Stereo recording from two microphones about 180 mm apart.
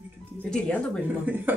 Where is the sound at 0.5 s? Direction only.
5° left (ahead or behind).